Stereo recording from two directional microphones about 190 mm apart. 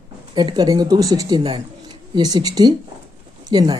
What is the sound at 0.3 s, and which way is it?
Speech, 20° right (ahead or behind).